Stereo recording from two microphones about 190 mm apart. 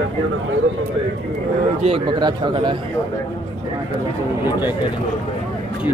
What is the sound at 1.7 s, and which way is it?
Speech, 30° right (ahead or behind).